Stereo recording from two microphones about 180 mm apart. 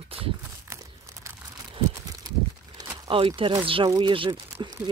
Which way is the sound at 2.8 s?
20° right (ahead or behind).